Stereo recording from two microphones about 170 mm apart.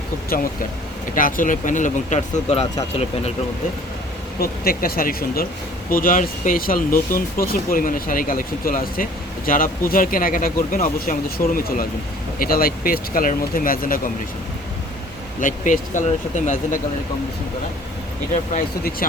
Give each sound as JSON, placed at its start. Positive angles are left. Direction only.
{"t": 1.1, "sound": "speech", "side_deg": 50}
{"t": 4.4, "sound": "speech", "side_deg": 60}
{"t": 15.4, "sound": "speech", "side_deg": 50}